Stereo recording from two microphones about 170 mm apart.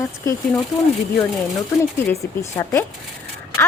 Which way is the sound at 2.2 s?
20° left (ahead or behind).